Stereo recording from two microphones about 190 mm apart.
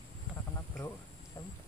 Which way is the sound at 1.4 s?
20° left (ahead or behind).